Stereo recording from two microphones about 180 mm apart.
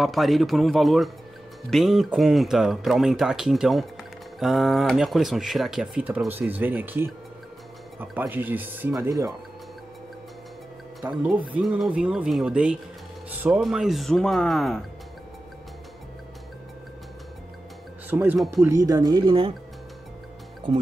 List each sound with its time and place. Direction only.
0.0 s speech: centre (ahead or behind); by 9.3 s 20° right (ahead or behind)
11.5 s speech: 5° right (ahead or behind)
18.1 s speech: 10° right (ahead or behind); by 19.5 s 25° right (ahead or behind)